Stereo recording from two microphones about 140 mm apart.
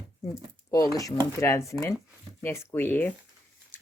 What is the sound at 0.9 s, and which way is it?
Speech, 25° left (ahead or behind).